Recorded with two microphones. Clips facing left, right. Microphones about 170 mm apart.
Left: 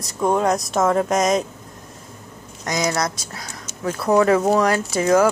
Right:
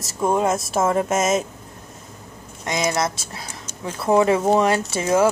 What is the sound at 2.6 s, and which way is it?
Speech, 25° right (ahead or behind).